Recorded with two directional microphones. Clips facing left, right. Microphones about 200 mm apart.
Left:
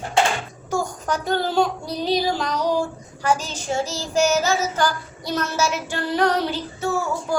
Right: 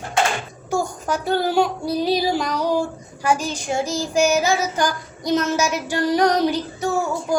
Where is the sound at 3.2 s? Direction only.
10° right (ahead or behind).